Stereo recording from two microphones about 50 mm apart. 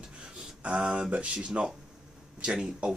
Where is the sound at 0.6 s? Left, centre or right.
Right.